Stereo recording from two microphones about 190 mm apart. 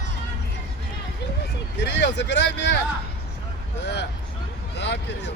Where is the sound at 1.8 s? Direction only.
65° left (ahead or behind).